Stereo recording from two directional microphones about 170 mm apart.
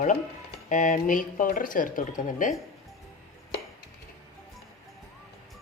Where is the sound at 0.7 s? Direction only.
50° left (ahead or behind).